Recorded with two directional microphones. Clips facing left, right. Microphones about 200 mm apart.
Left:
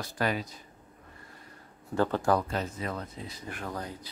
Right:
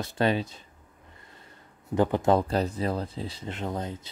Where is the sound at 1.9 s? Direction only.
15° right (ahead or behind).